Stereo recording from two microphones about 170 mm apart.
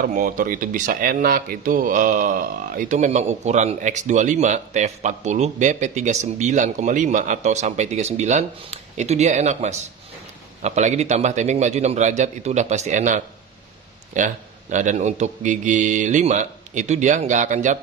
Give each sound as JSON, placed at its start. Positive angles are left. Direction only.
{"t": 0.0, "sound": "speech", "side_deg": -50}